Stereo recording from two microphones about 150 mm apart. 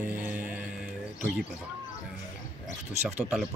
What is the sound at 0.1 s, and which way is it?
Music, 10° right (ahead or behind).